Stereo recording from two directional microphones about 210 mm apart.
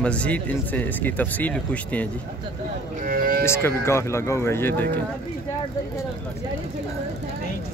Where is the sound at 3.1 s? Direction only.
45° right (ahead or behind).